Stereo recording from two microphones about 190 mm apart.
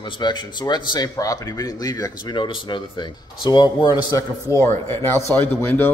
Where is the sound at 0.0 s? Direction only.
25° left (ahead or behind).